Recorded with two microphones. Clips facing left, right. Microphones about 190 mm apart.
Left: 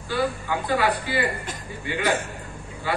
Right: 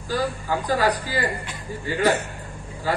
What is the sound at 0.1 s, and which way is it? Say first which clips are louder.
A man's voice: even; 40° right (ahead or behind).